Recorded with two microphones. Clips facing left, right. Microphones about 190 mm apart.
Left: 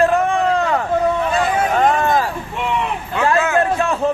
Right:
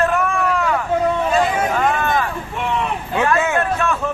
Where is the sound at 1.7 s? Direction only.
35° left (ahead or behind).